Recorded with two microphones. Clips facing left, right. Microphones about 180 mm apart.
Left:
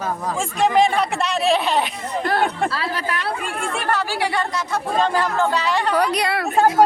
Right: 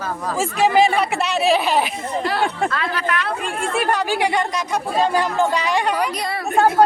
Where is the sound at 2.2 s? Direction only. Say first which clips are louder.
Left 1 dB; 50° left (ahead or behind).